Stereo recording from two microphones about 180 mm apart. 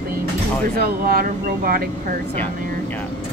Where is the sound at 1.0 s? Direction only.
55° right (ahead or behind).